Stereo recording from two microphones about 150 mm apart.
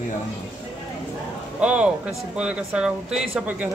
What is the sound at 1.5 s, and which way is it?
Speech, 10° right (ahead or behind).